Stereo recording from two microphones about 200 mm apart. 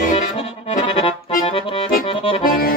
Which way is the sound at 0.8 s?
30° left (ahead or behind).